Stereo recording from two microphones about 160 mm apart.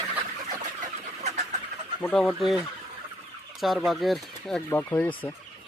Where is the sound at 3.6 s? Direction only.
Centre (ahead or behind).